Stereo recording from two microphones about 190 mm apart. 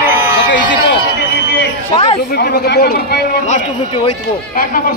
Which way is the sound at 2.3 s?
60° left (ahead or behind).